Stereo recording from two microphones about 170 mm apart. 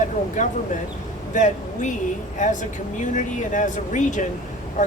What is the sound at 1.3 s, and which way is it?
Speech, 45° left (ahead or behind).